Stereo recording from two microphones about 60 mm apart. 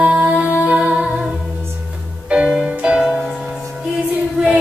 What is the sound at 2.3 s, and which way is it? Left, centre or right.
Music, centre.